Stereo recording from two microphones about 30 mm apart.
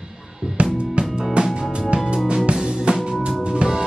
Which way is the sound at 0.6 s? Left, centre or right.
Right.